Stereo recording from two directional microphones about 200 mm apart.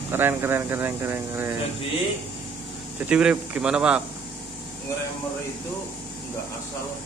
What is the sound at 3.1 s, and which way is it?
Speech, 5° right (ahead or behind).